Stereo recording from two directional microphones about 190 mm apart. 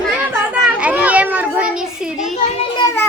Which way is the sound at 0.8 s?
5° right (ahead or behind).